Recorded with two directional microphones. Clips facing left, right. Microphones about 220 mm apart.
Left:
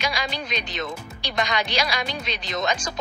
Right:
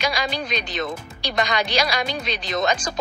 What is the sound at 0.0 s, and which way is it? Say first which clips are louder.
A woman's voice: right 3 dB; 40° right (ahead or behind).